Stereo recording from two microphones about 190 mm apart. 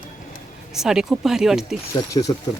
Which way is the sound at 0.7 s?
Centre (ahead or behind).